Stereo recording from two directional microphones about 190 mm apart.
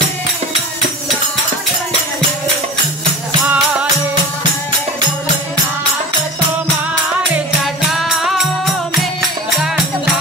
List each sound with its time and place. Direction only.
3.4 s music: 15° right (ahead or behind)
7.6 s music: centre (ahead or behind)